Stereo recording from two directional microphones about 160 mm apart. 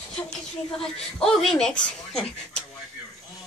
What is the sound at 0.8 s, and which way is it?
Speech, 5° left (ahead or behind).